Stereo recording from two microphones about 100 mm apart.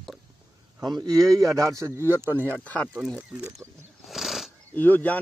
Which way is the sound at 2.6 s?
15° left (ahead or behind).